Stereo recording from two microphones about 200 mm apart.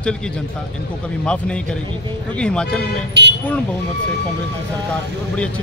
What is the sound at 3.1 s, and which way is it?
Speech, 60° right (ahead or behind).